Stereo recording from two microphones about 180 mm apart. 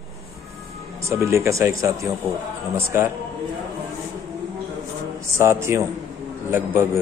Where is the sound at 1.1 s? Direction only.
15° right (ahead or behind).